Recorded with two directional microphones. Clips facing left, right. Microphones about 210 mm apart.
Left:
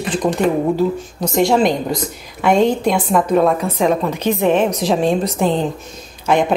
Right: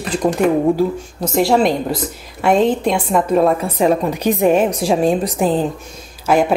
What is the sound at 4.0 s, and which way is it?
A woman's voice, 15° right (ahead or behind).